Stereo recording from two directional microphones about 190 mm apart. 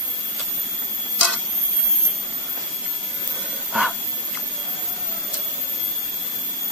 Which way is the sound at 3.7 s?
5° right (ahead or behind).